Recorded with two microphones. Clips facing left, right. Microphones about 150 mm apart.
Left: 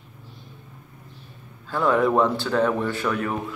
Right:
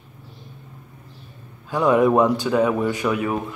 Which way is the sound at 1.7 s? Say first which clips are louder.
Right 4 dB; 15° right (ahead or behind).